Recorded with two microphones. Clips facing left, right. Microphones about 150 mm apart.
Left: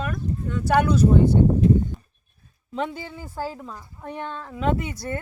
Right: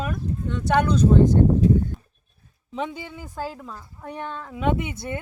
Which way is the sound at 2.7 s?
15° right (ahead or behind).